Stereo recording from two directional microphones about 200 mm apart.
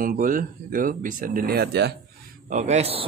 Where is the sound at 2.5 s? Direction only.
35° right (ahead or behind).